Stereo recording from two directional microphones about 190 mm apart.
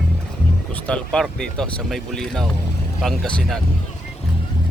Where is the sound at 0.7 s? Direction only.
5° left (ahead or behind).